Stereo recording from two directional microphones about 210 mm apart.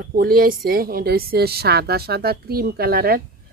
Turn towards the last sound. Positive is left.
turn(degrees=-45)  # may be behind; listen again after turning